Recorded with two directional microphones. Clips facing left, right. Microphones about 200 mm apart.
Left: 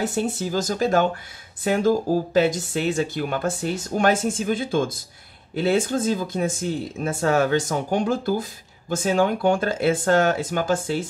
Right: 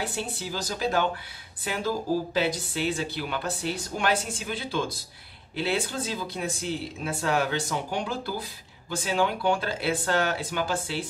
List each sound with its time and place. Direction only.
0.0 s speech: 45° left (ahead or behind)